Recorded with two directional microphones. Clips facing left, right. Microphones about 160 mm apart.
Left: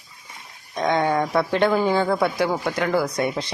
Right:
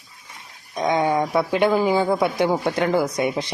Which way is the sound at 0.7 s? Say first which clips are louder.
Right 1 dB; 10° right (ahead or behind).